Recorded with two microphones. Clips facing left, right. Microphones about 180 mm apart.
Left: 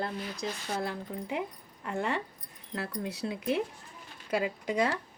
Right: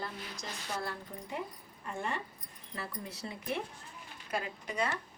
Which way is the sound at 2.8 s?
85° left.